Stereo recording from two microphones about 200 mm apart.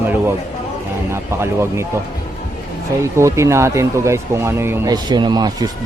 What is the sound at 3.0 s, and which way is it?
Speech, 15° right (ahead or behind).